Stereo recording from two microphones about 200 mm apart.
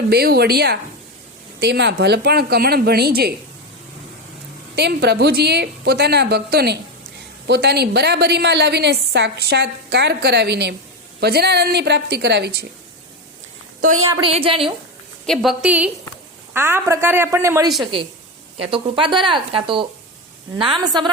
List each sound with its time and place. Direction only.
0.1 s a woman's voice: 50° right (ahead or behind)
4.7 s a woman's voice: 55° right (ahead or behind)
14.0 s speech: 25° right (ahead or behind)
15.3 s a woman's voice: centre (ahead or behind)
18.6 s speech: 25° right (ahead or behind)